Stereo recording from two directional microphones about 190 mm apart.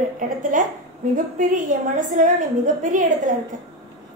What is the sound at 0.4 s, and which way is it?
A woman's voice, 45° right (ahead or behind).